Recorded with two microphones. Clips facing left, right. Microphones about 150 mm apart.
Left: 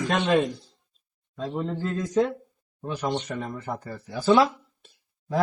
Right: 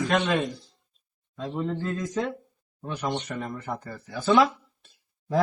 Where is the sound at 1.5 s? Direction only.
5° left (ahead or behind).